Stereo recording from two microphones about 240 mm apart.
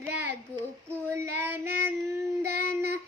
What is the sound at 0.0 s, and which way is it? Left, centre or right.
Child singing, centre.